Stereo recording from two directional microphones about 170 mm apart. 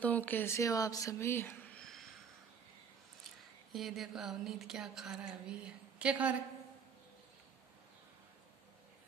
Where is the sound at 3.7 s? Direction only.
Centre (ahead or behind).